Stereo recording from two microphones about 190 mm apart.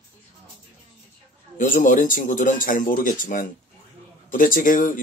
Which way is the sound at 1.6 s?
45° left (ahead or behind).